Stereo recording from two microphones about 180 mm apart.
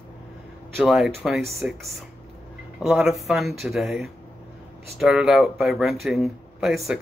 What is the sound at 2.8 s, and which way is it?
Speech, 5° right (ahead or behind).